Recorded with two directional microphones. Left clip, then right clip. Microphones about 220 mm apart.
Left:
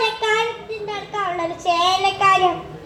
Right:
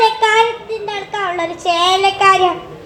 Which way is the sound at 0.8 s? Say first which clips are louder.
Right 3 dB; 40° right (ahead or behind).